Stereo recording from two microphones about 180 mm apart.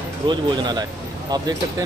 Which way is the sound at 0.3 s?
25° right (ahead or behind).